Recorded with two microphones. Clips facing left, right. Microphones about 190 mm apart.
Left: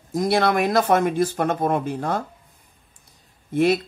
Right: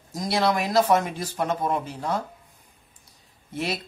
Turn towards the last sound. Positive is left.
turn(degrees=55)  # may be behind; listen again after turning